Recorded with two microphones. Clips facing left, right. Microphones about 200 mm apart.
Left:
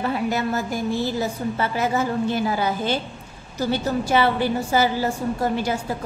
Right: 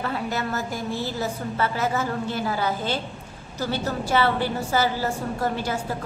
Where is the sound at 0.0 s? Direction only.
15° left (ahead or behind).